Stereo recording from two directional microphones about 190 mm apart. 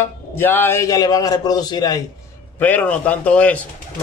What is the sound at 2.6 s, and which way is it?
A man's voice, 10° left (ahead or behind).